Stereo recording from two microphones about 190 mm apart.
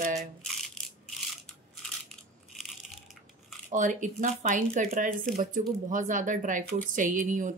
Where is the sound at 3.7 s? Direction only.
40° right (ahead or behind).